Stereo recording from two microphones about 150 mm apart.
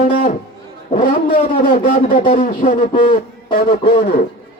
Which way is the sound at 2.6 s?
55° left (ahead or behind).